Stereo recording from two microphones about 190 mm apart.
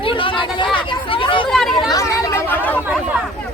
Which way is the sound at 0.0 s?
25° left (ahead or behind).